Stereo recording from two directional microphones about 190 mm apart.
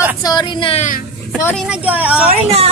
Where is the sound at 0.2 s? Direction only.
20° left (ahead or behind).